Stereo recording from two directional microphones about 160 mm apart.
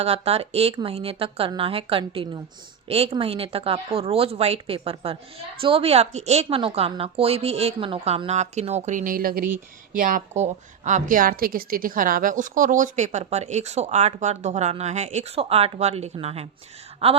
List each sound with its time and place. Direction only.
0.0 s a woman's voice: 40° right (ahead or behind)